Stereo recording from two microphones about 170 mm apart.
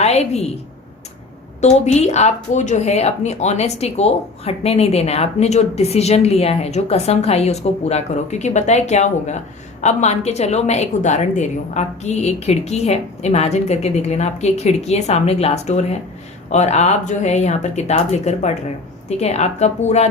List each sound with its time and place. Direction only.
0.0 s a woman's voice: 40° left (ahead or behind)
1.6 s speech: 40° left (ahead or behind)